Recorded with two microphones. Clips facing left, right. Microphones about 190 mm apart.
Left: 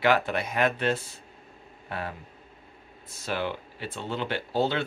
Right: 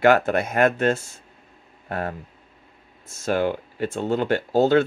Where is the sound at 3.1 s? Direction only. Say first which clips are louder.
Right 8 dB; 45° right (ahead or behind).